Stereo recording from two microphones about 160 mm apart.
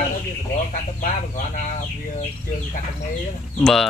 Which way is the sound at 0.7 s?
55° left (ahead or behind).